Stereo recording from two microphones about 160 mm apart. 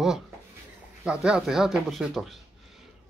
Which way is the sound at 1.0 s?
5° right (ahead or behind).